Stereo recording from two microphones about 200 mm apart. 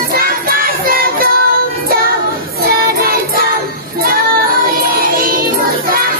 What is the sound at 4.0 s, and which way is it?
Child singing, 45° right (ahead or behind).